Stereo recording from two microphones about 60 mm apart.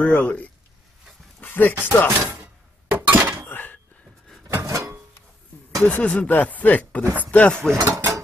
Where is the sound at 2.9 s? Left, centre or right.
Right.